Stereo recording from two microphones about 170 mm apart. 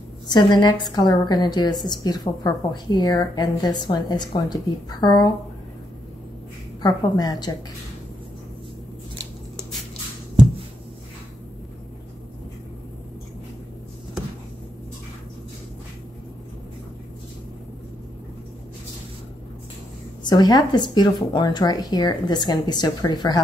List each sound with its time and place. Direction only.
0.3 s a woman's voice: 25° left (ahead or behind)
6.8 s a woman's voice: 20° left (ahead or behind)
20.2 s a woman's voice: 25° left (ahead or behind)